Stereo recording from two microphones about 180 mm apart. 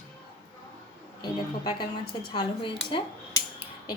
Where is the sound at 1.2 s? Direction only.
20° left (ahead or behind).